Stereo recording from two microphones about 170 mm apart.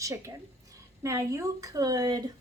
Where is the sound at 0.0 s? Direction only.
15° right (ahead or behind).